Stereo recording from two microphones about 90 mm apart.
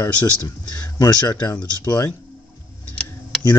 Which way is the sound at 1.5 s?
35° left (ahead or behind).